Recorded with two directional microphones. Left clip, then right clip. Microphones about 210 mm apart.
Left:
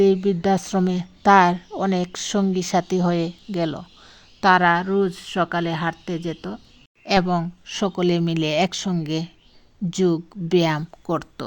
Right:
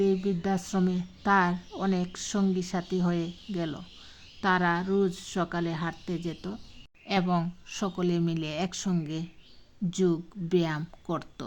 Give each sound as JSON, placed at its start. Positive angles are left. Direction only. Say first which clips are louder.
{"t": 0.0, "sound": "a woman's voice", "louder": "left 9 dB", "side_deg": 35}